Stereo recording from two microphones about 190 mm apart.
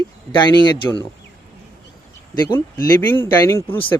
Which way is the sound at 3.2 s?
10° left (ahead or behind).